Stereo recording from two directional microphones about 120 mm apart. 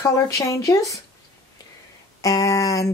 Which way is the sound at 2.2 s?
30° left (ahead or behind).